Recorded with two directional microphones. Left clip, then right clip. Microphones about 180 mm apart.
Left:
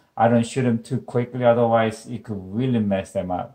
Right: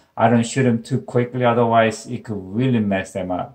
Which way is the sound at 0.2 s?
25° left (ahead or behind).